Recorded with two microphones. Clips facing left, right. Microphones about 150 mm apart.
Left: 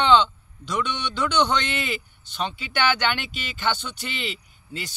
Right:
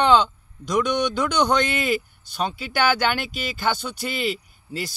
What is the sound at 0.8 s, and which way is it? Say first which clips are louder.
Speech: right 5 dB; 40° right (ahead or behind).